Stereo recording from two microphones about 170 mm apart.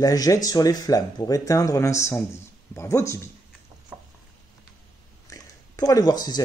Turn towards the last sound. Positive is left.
turn(degrees=25)  # may be behind; listen again after turning